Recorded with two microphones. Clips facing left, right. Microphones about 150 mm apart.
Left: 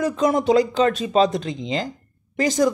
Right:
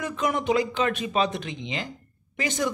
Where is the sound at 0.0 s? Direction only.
35° left (ahead or behind).